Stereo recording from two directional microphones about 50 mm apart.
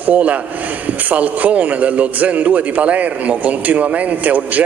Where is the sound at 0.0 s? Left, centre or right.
Right.